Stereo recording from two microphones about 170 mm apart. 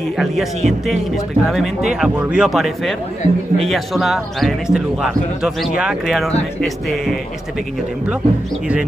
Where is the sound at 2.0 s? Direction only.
5° right (ahead or behind).